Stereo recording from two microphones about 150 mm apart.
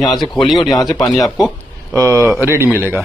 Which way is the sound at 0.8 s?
25° left (ahead or behind).